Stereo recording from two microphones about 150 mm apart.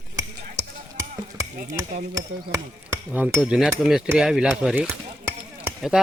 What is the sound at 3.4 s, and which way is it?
Speech, centre (ahead or behind).